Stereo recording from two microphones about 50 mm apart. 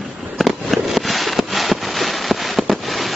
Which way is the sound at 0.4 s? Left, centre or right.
Centre.